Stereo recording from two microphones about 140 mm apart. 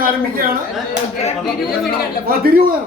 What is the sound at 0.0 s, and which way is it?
Speech, 90° right.